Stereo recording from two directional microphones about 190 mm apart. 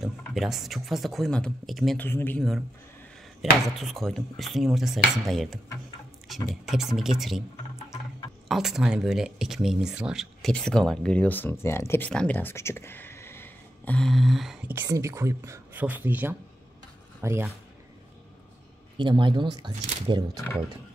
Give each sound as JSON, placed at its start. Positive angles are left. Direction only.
{"t": 0.0, "sound": "speech", "side_deg": 0}
{"t": 3.6, "sound": "speech", "side_deg": 0}
{"t": 8.5, "sound": "speech", "side_deg": 0}
{"t": 14.7, "sound": "speech", "side_deg": -15}
{"t": 18.9, "sound": "speech", "side_deg": -25}